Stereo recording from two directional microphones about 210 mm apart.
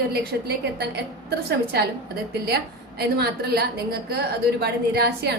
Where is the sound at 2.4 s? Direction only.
50° right (ahead or behind).